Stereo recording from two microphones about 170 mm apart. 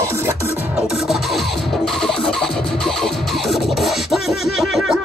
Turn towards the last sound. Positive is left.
turn(degrees=0)  # may be behind; listen again after turning